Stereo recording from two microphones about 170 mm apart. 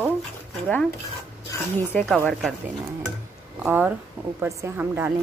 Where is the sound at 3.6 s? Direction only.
10° right (ahead or behind).